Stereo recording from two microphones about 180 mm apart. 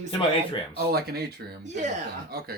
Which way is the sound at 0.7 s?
60° right (ahead or behind).